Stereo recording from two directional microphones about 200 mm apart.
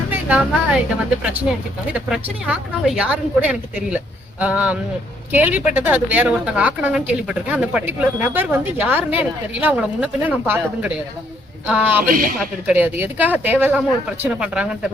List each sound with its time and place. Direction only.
0.1 s a woman's voice: 5° right (ahead or behind)
1.9 s a woman's voice: 5° right (ahead or behind)